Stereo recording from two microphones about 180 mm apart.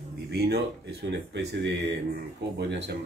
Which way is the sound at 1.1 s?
75° right (ahead or behind).